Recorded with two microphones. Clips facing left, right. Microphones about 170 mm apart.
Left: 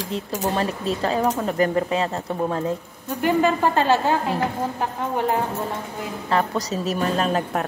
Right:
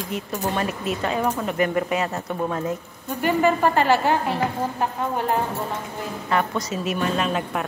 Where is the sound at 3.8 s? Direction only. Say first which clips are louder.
Left 1 dB; 15° right (ahead or behind).